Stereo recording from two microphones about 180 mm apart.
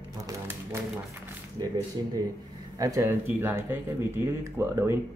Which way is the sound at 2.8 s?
15° right (ahead or behind).